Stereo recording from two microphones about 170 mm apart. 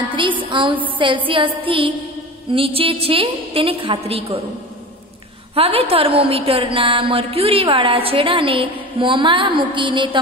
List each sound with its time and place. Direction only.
0.4 s a sound: 30° right (ahead or behind)
2.5 s a woman's voice: 30° right (ahead or behind)
5.5 s a woman's voice: 35° right (ahead or behind)